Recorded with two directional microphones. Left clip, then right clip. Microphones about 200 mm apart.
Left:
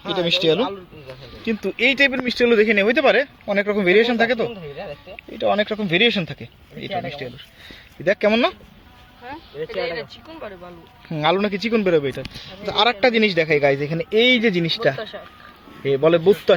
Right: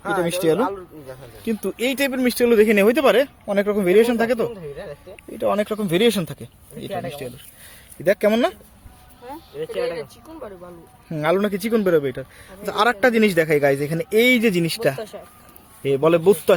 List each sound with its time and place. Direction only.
0.0 s speech: 35° right (ahead or behind)
1.5 s a man's voice: 10° right (ahead or behind)
3.4 s a man's voice: 5° right (ahead or behind)
5.6 s speech: centre (ahead or behind)
6.1 s a man's voice: 15° right (ahead or behind)
9.2 s speech: 5° left (ahead or behind)
11.5 s a man's voice: 10° right (ahead or behind)
11.9 s speech: centre (ahead or behind)
12.6 s a man's voice: 15° right (ahead or behind)
15.1 s speech: 10° left (ahead or behind)
15.8 s speech: 20° right (ahead or behind)